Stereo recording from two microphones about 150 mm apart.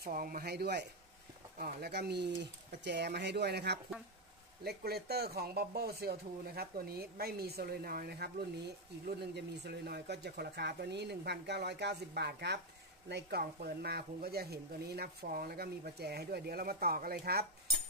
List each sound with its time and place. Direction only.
0.0 s speech: 70° right (ahead or behind); by 17.5 s 90° right